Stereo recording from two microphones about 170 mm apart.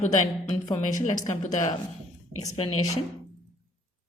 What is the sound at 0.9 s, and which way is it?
Speech, 45° left (ahead or behind).